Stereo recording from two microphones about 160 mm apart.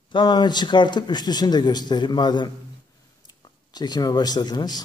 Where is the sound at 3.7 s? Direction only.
25° left (ahead or behind).